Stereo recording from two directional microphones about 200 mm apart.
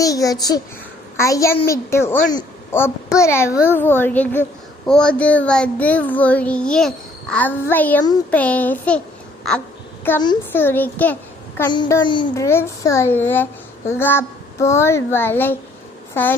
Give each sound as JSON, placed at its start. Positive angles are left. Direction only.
{"t": 0.0, "sound": "a child's voice", "side_deg": 15}
{"t": 11.7, "sound": "a child's voice", "side_deg": 20}